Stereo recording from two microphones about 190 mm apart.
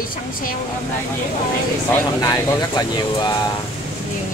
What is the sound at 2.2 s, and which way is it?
Speech, 20° left (ahead or behind).